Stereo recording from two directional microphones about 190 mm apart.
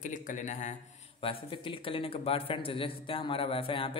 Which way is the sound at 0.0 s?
40° left (ahead or behind).